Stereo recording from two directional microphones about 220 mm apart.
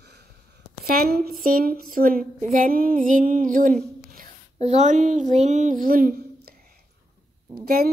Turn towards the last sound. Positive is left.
turn(degrees=-45)  # may be behind; listen again after turning